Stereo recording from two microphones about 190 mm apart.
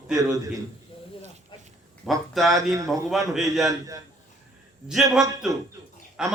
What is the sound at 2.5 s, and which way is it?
Speech, 15° right (ahead or behind).